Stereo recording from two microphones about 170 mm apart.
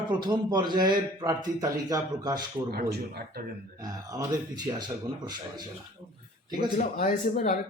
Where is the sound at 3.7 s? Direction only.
20° right (ahead or behind).